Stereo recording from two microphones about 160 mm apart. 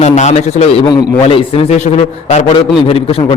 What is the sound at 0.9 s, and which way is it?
A man's voice, 35° left (ahead or behind).